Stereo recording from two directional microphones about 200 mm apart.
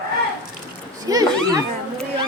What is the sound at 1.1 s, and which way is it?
Speech, 15° right (ahead or behind).